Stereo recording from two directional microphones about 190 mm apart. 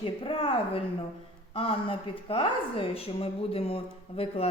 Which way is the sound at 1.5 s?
30° left (ahead or behind).